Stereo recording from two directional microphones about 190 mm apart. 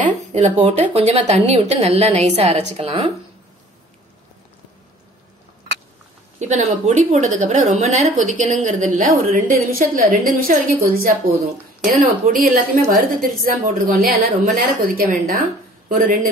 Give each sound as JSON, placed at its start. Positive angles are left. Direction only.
{"t": 0.0, "sound": "a woman's voice", "side_deg": -35}
{"t": 6.4, "sound": "a woman's voice", "side_deg": -40}